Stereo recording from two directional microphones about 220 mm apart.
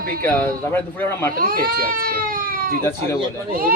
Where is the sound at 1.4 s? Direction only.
40° right (ahead or behind).